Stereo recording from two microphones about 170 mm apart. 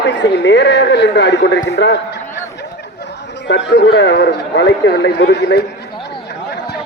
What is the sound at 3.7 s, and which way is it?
Speech, 85° left.